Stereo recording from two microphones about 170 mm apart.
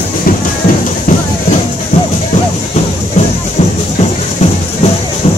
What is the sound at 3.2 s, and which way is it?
Music, 45° left (ahead or behind).